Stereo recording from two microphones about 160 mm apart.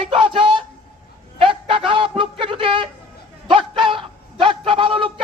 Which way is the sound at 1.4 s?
35° right (ahead or behind).